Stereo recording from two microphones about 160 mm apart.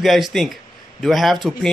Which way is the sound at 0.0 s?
Centre (ahead or behind).